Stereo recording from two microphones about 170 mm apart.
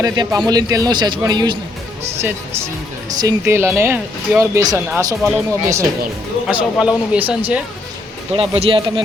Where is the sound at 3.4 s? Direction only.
15° right (ahead or behind).